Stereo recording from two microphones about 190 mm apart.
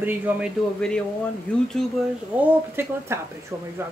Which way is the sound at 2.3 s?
10° right (ahead or behind).